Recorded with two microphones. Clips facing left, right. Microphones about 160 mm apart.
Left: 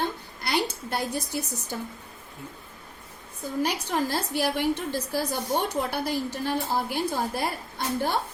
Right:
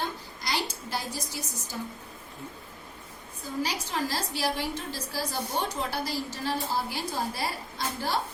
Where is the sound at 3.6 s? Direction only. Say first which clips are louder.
Left 4 dB; 55° left (ahead or behind).